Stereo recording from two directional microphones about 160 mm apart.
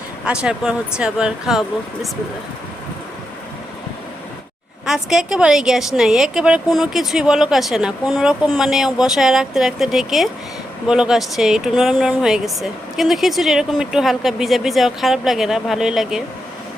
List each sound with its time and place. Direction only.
0.3 s speech: 5° right (ahead or behind)
4.9 s speech: 5° right (ahead or behind)